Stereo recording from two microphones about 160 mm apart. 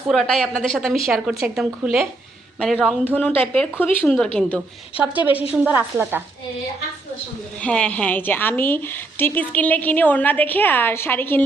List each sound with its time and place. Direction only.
0.1 s a woman's voice: 5° left (ahead or behind)
4.9 s a woman's voice: 10° right (ahead or behind)
7.6 s a woman's voice: 10° left (ahead or behind)